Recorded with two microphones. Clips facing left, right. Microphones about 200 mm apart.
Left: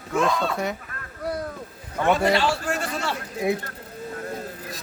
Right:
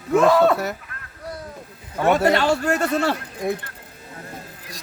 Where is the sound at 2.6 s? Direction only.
60° right (ahead or behind).